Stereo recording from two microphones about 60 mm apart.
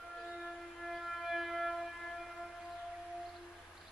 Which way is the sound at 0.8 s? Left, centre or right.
Centre.